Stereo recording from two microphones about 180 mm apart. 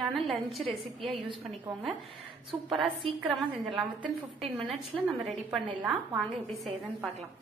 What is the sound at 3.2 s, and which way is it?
Speech, centre (ahead or behind).